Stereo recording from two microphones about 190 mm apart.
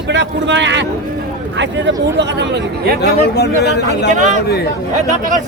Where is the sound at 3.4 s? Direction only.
60° left (ahead or behind).